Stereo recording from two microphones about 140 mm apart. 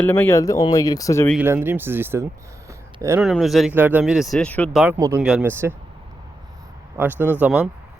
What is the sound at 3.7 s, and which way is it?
Speech, 15° right (ahead or behind).